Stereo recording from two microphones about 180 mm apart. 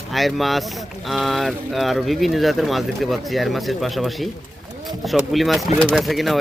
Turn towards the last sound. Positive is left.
turn(degrees=0)  # may be behind; listen again after turning